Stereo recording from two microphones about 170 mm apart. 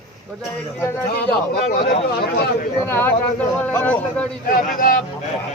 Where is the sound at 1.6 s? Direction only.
60° left (ahead or behind).